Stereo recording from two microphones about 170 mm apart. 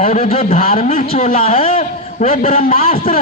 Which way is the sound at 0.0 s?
40° left (ahead or behind).